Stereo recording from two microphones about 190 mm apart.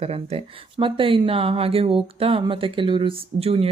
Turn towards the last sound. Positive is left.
turn(degrees=-30)  # may be behind; listen again after turning